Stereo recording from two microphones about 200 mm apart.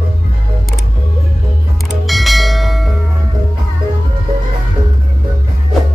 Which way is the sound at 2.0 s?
Centre (ahead or behind).